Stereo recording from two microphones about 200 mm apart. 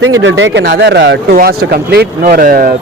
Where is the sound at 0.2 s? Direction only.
70° right (ahead or behind).